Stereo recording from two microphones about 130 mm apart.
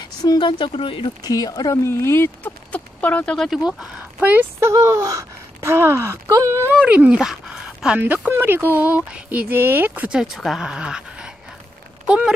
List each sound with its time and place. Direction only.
0.0 s speech: 35° left (ahead or behind)
1.2 s speech: 30° left (ahead or behind); by 3.7 s centre (ahead or behind)
4.2 s speech: 15° right (ahead or behind)
6.9 s speech: 10° right (ahead or behind)